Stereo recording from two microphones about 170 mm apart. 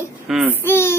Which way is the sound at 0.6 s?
15° left (ahead or behind).